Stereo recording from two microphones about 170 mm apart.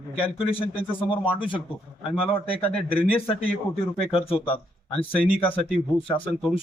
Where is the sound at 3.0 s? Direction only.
35° left (ahead or behind).